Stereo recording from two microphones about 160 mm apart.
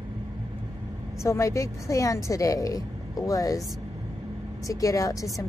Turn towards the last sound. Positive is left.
turn(degrees=20)  # may be behind; listen again after turning